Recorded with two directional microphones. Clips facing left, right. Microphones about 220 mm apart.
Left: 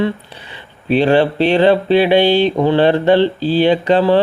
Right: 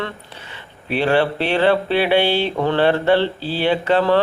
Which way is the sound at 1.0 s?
20° left (ahead or behind).